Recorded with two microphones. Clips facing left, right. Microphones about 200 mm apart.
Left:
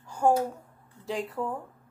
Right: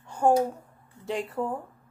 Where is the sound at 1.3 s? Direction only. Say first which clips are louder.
Right 2 dB; 30° right (ahead or behind).